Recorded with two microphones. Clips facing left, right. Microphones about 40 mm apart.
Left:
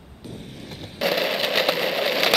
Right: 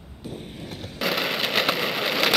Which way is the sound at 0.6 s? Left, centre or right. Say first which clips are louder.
Left 4 dB; centre.